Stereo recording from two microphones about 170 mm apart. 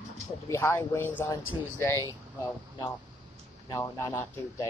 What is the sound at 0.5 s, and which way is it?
Speech, 15° left (ahead or behind).